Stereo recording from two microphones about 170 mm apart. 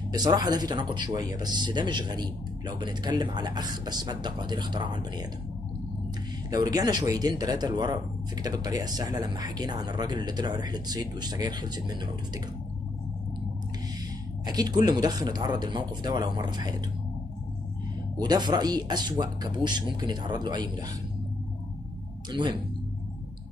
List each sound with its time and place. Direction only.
0.1 s speech: 25° right (ahead or behind)
6.5 s speech: 20° right (ahead or behind)
14.4 s speech: 25° right (ahead or behind)
18.2 s speech: 25° right (ahead or behind)
22.3 s speech: 25° right (ahead or behind)